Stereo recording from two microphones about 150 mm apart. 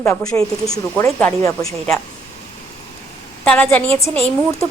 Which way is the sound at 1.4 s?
20° left (ahead or behind).